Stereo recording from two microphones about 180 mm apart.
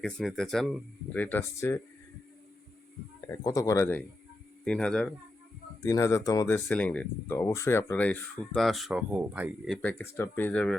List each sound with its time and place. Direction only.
0.0 s speech: 5° left (ahead or behind)
3.2 s speech: 20° left (ahead or behind)
5.8 s speech: 15° left (ahead or behind); by 9.5 s 10° right (ahead or behind)
9.6 s speech: 5° left (ahead or behind)